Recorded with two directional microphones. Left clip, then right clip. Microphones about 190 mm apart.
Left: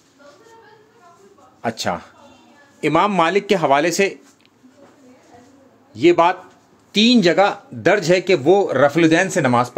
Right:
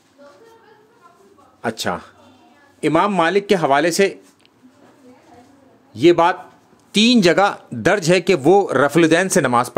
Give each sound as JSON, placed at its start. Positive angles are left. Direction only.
{"t": 1.6, "sound": "a man's voice", "side_deg": -10}
{"t": 5.9, "sound": "a man's voice", "side_deg": -20}